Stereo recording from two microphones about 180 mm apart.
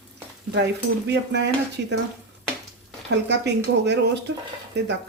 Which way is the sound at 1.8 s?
65° right (ahead or behind).